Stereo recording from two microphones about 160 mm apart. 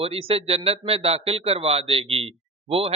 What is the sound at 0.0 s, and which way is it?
Speech, 35° right (ahead or behind).